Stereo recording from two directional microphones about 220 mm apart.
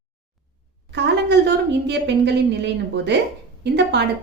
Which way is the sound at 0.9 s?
50° right (ahead or behind).